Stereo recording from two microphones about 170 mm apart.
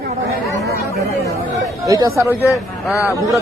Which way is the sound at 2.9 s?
20° left (ahead or behind).